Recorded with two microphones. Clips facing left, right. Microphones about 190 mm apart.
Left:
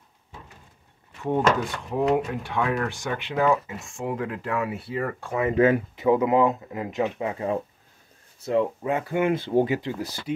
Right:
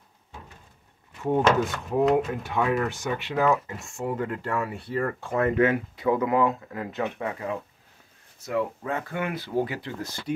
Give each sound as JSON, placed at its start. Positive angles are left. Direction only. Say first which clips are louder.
{"t": 1.2, "sound": "speech", "louder": "right 1 dB", "side_deg": 0}
{"t": 5.9, "sound": "speech", "louder": "left 1 dB", "side_deg": 20}
{"t": 8.5, "sound": "speech", "louder": "left 4 dB", "side_deg": 20}